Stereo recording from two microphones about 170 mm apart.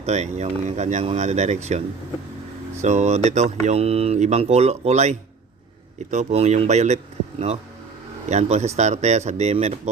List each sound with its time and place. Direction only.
0.0 s speech: 40° right (ahead or behind)
2.8 s speech: 40° right (ahead or behind)